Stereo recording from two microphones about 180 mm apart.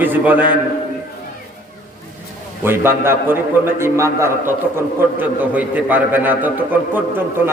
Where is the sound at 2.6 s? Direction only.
15° right (ahead or behind).